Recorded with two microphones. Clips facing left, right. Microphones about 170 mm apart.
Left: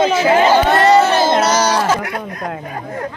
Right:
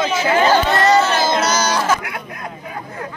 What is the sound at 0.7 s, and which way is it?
Crowd, 30° left (ahead or behind).